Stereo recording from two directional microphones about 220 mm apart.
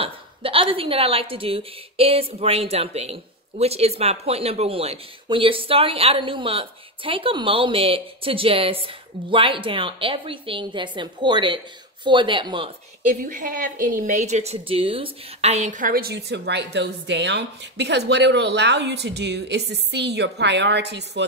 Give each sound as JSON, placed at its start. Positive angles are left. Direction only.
{"t": 0.0, "sound": "speech", "side_deg": -25}
{"t": 13.1, "sound": "a woman's voice", "side_deg": -40}